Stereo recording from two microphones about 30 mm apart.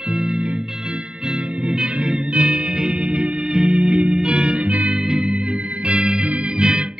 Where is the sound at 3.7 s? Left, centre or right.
Right.